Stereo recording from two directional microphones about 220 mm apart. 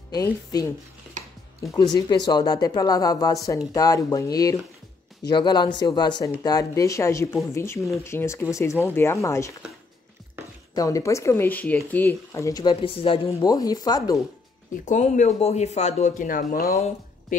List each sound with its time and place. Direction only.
0.1 s speech: 15° left (ahead or behind)
2.0 s speech: 20° left (ahead or behind)
10.7 s speech: 15° left (ahead or behind)
14.9 s speech: 35° left (ahead or behind)
16.7 s speech: 30° left (ahead or behind)